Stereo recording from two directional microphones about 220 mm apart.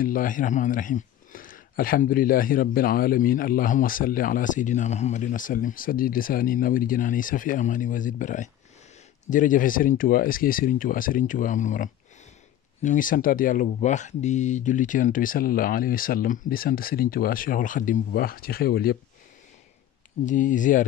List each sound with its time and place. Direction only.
0.0 s speech: 40° left (ahead or behind)
20.2 s speech: 35° left (ahead or behind)